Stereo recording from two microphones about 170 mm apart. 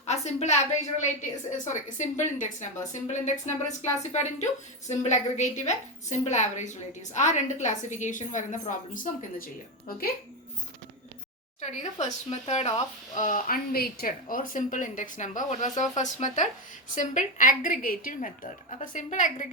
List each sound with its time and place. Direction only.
0.0 s a woman's voice: 40° left (ahead or behind)
11.6 s a woman's voice: 40° left (ahead or behind)